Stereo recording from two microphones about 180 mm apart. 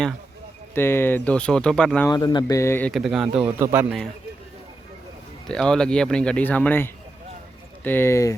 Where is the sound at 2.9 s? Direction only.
Centre (ahead or behind).